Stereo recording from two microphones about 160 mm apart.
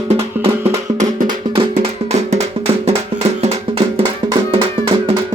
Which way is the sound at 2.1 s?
40° right (ahead or behind).